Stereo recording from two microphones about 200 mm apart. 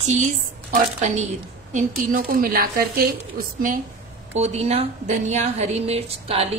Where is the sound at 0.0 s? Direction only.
35° right (ahead or behind).